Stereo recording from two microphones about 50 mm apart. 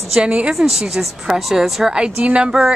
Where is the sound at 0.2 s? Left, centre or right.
Centre.